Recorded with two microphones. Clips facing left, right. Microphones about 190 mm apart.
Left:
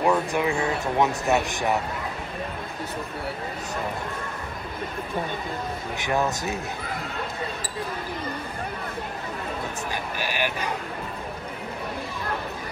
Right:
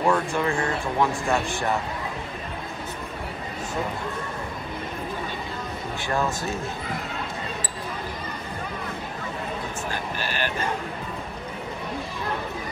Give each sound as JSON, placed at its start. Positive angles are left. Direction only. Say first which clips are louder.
{"t": 0.0, "sound": "speech", "louder": "even", "side_deg": 15}
{"t": 6.0, "sound": "speech", "louder": "left 1 dB", "side_deg": 20}
{"t": 10.1, "sound": "vehicle", "louder": "left 3 dB", "side_deg": 10}